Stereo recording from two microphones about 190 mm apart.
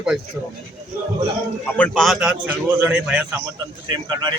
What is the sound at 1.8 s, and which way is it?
Speech, centre (ahead or behind).